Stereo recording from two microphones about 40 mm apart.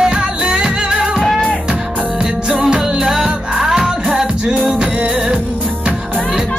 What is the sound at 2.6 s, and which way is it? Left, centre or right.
Music, centre.